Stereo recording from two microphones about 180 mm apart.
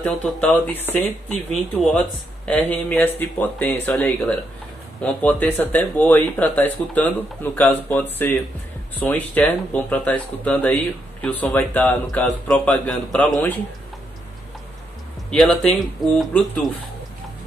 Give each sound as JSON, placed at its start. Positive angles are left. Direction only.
{"t": 0.0, "sound": "speech", "side_deg": 5}
{"t": 15.3, "sound": "speech", "side_deg": 0}